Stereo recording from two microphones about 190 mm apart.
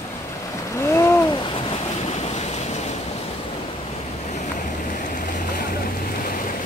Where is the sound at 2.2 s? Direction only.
35° left (ahead or behind).